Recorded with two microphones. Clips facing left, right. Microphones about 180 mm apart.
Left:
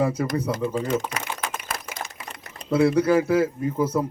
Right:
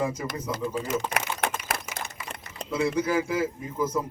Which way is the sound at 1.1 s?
65° right (ahead or behind).